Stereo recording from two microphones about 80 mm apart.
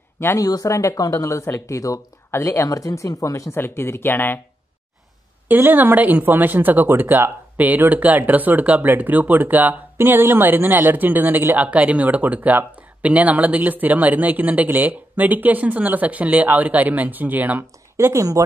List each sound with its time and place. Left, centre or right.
0.4 s speech: left
3.5 s speech: left
5.5 s speech: right
17.9 s speech: right